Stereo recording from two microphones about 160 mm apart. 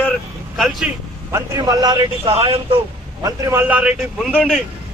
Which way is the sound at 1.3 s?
25° right (ahead or behind).